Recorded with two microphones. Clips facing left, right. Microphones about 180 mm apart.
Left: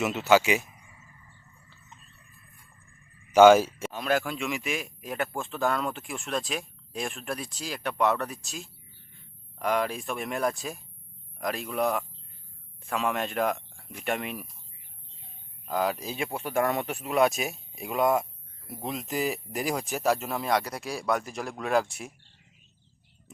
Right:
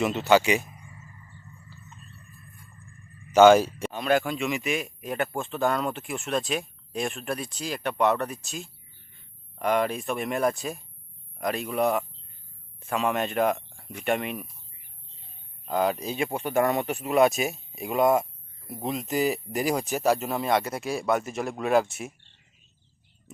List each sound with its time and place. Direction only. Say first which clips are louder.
0.0 s a man's voice: right 1 dB; 5° left (ahead or behind)
3.3 s a man's voice: even; 10° left (ahead or behind)
15.6 s a man's voice: right 3 dB; centre (ahead or behind)